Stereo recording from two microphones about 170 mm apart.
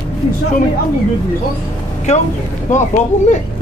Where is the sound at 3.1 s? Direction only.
45° left (ahead or behind).